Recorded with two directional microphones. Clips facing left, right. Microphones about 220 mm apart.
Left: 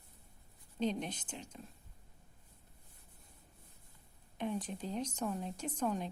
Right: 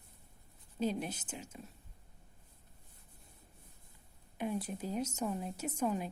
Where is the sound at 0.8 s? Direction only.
5° right (ahead or behind).